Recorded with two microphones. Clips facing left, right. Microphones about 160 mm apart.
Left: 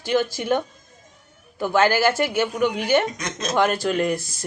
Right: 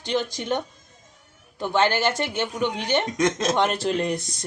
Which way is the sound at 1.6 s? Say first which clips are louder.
Left 3 dB; 10° left (ahead or behind).